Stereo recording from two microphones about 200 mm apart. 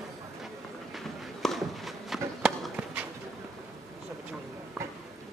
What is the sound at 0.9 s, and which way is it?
Walk, centre (ahead or behind).